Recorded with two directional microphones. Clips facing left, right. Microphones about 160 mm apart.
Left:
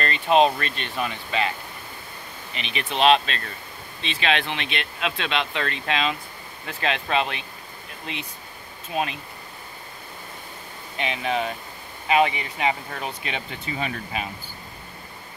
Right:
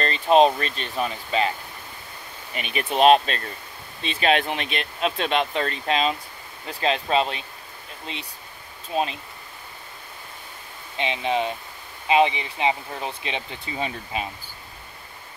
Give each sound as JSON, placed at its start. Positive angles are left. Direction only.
{"t": 0.0, "sound": "speech", "side_deg": -35}
{"t": 2.5, "sound": "speech", "side_deg": -45}
{"t": 8.9, "sound": "speech", "side_deg": -30}
{"t": 11.0, "sound": "speech", "side_deg": -25}